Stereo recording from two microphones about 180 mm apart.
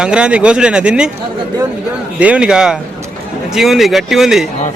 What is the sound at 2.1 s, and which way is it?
A man's voice, 5° right (ahead or behind).